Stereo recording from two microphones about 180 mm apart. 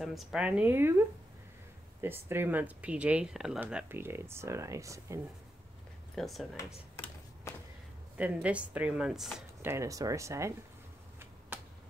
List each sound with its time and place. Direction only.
0.0 s speech: centre (ahead or behind); by 5.2 s 15° right (ahead or behind)
6.1 s speech: centre (ahead or behind)
7.5 s a sound: 15° left (ahead or behind)
8.2 s speech: 5° right (ahead or behind)
9.7 s speech: 15° right (ahead or behind)
11.5 s a sound: 10° right (ahead or behind)